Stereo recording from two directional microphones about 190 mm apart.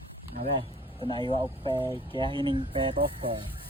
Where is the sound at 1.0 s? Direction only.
25° right (ahead or behind).